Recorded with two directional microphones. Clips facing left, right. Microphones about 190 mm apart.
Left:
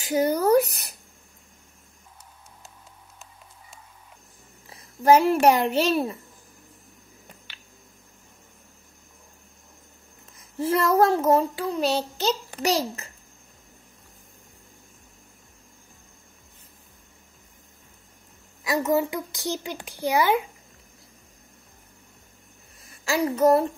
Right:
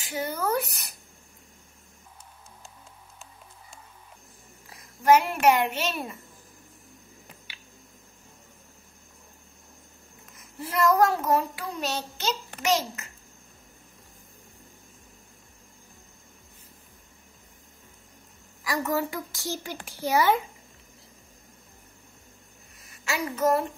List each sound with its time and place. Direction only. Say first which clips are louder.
0.0 s a child's voice: left 8 dB; 40° left (ahead or behind)
4.6 s a child's voice: left 2 dB; 30° left (ahead or behind)
10.3 s a child's voice: left 7 dB; 30° left (ahead or behind)
18.6 s a woman's voice: left 5 dB; 20° left (ahead or behind)
22.8 s a child's voice: left 7 dB; 35° left (ahead or behind)